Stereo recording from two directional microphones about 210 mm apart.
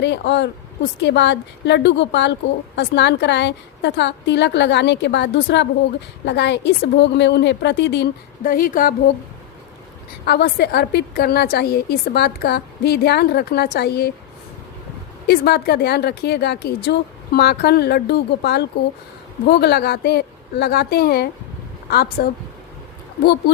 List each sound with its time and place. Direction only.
0.0 s a woman's voice: 55° left (ahead or behind); by 9.0 s 40° left (ahead or behind)
10.2 s a woman's voice: 50° left (ahead or behind)
15.3 s a woman's voice: 50° left (ahead or behind)